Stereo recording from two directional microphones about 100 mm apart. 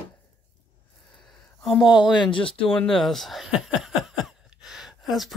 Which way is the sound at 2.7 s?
5° left (ahead or behind).